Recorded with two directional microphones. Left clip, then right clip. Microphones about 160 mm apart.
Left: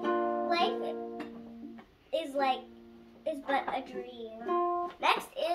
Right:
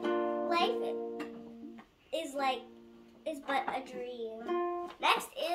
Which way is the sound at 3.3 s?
5° left (ahead or behind).